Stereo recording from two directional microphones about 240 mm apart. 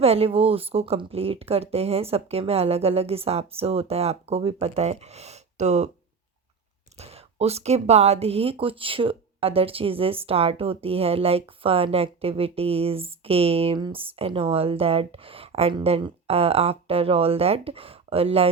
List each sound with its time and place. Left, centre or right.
0.0 s speech: right
6.9 s speech: right